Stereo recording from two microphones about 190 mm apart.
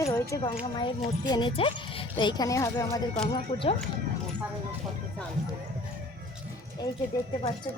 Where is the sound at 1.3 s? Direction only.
25° left (ahead or behind).